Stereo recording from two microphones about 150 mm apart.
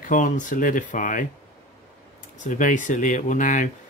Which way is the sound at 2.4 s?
55° left (ahead or behind).